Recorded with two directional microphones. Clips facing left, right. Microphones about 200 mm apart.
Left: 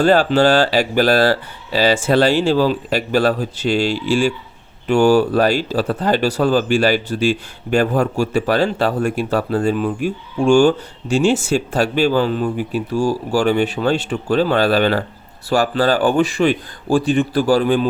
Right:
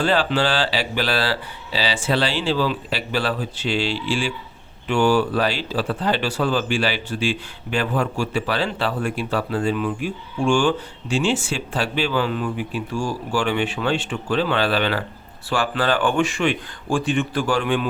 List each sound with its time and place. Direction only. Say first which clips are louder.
0.0 s speech: left 7 dB; 45° left (ahead or behind)